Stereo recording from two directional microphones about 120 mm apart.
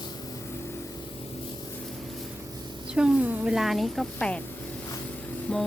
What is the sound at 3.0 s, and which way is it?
A woman's voice, 10° right (ahead or behind).